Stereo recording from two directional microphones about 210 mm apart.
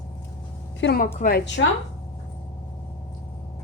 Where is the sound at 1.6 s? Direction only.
65° left (ahead or behind).